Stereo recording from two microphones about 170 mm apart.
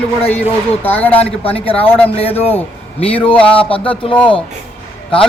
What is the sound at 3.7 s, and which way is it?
Speech, 30° left (ahead or behind).